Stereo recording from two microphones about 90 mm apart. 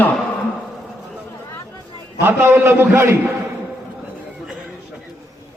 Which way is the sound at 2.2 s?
25° right (ahead or behind).